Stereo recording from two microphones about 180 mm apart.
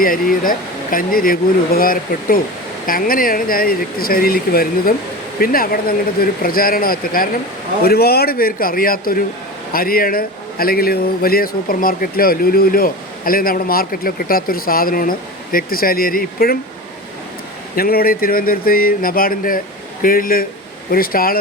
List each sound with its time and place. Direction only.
0.0 s a man's voice: 50° left (ahead or behind)
17.7 s speech: 55° left (ahead or behind)